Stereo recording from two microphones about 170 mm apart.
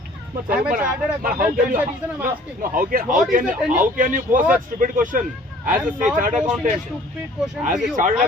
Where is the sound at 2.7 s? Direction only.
55° right (ahead or behind).